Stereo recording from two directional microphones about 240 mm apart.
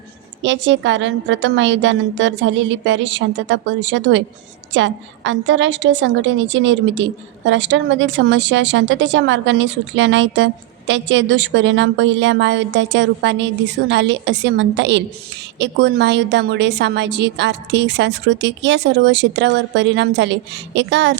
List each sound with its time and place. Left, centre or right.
0.4 s a woman's voice: right